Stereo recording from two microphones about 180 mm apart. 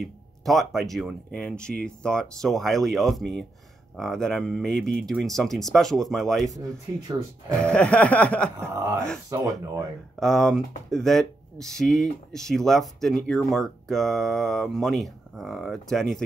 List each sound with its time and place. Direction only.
0.0 s speech: centre (ahead or behind)
6.5 s speech: 20° right (ahead or behind)
7.7 s a sound: 5° left (ahead or behind)
8.5 s speech: 15° right (ahead or behind)
10.2 s speech: centre (ahead or behind)